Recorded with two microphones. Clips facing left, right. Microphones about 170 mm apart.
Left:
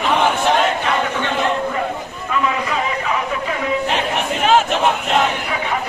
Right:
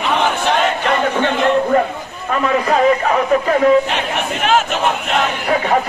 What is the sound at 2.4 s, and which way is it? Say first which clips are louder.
Speech: right 10 dB; 50° right (ahead or behind).